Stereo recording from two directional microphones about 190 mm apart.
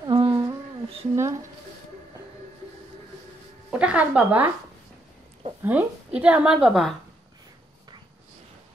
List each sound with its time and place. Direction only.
0.0 s a sound: 25° right (ahead or behind)
3.7 s speech: 5° right (ahead or behind)
5.6 s a woman's voice: 10° right (ahead or behind)